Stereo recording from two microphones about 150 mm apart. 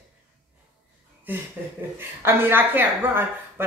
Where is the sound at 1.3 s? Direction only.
15° right (ahead or behind).